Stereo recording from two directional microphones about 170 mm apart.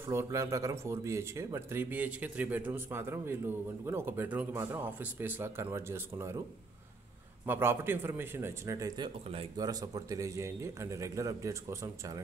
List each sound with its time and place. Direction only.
0.0 s speech: 15° right (ahead or behind)
7.4 s speech: 15° right (ahead or behind)